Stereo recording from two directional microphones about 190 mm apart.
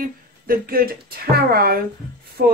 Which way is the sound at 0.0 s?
50° right (ahead or behind).